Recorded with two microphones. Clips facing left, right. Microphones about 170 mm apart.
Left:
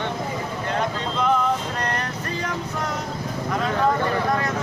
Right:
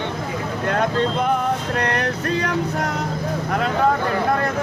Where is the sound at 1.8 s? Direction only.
65° right (ahead or behind).